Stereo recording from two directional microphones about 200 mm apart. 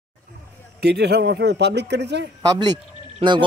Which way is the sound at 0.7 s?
55° right (ahead or behind).